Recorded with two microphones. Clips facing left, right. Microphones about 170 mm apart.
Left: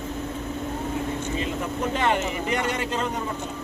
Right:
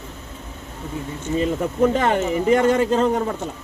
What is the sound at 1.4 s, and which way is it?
Speech, 45° right (ahead or behind).